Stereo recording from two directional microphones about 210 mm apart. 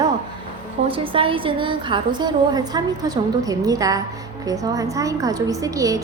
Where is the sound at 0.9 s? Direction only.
25° right (ahead or behind).